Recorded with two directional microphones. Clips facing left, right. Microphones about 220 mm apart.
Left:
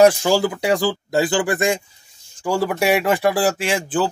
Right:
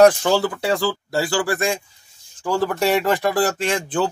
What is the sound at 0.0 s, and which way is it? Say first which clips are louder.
Speech: even; 10° left (ahead or behind).